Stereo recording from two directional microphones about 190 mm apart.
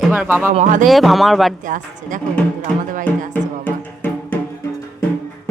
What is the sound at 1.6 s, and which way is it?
Speech, 45° right (ahead or behind).